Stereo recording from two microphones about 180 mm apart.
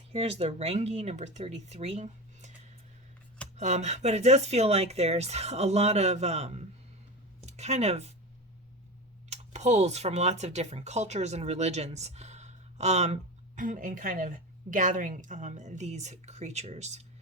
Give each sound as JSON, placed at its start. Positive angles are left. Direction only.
{"t": 0.1, "sound": "speech", "side_deg": -35}
{"t": 3.6, "sound": "speech", "side_deg": -40}
{"t": 7.4, "sound": "a sound", "side_deg": -40}
{"t": 9.3, "sound": "a woman's voice", "side_deg": -40}